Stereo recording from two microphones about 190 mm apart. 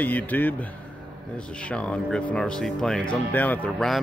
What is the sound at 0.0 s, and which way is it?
A man's voice, 10° left (ahead or behind).